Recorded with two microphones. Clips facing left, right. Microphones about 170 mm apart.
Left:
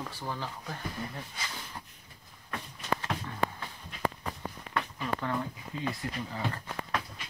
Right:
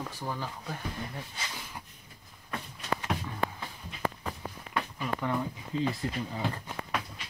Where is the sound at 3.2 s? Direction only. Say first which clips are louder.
Even; 10° right (ahead or behind).